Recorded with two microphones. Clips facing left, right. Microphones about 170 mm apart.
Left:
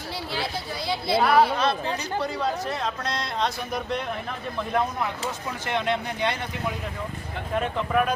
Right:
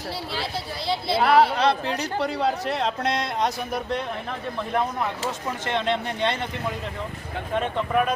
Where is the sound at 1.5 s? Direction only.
70° right (ahead or behind).